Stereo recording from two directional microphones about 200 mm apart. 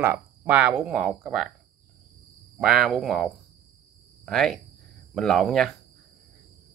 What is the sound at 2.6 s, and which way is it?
Speech, centre (ahead or behind).